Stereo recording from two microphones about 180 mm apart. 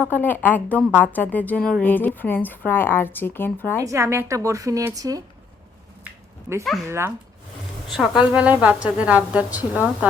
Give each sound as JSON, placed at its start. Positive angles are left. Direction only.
{"t": 0.1, "sound": "a woman's voice", "side_deg": 10}
{"t": 3.8, "sound": "a woman's voice", "side_deg": -15}
{"t": 6.1, "sound": "a sound", "side_deg": -15}
{"t": 6.8, "sound": "a woman's voice", "side_deg": -15}
{"t": 7.9, "sound": "a woman's voice", "side_deg": 0}